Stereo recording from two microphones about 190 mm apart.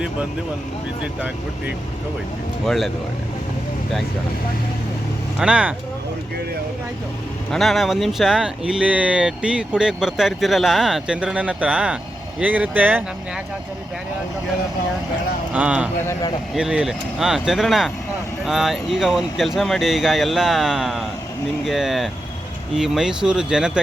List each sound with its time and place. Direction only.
2.6 s speech: centre (ahead or behind)
5.4 s speech: 5° right (ahead or behind)
7.5 s speech: centre (ahead or behind)
15.5 s speech: 5° right (ahead or behind)